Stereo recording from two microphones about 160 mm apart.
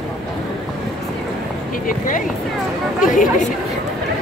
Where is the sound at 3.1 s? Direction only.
55° left (ahead or behind).